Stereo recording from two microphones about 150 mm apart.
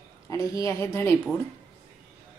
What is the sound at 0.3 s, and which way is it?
Speech, 20° left (ahead or behind).